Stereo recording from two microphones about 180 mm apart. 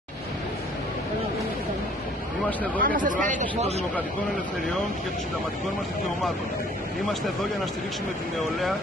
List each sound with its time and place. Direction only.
2.8 s speech: 50° right (ahead or behind)